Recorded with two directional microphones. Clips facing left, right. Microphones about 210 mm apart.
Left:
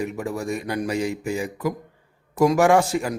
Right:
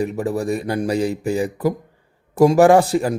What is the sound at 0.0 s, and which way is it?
Speech, 35° right (ahead or behind).